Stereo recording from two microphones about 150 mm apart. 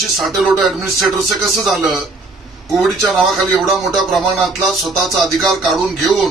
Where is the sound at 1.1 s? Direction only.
20° right (ahead or behind).